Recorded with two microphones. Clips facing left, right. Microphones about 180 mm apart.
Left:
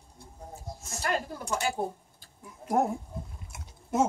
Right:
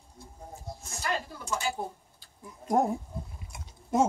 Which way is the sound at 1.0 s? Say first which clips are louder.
Left 2 dB; 50° left (ahead or behind).